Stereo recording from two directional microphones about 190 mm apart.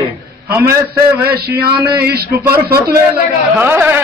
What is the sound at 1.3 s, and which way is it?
Speech, 55° right (ahead or behind).